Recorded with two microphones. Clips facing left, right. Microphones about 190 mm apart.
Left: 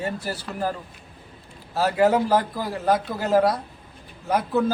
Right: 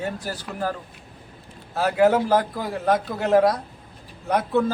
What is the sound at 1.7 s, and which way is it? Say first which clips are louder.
A man's voice: right 1 dB; centre (ahead or behind).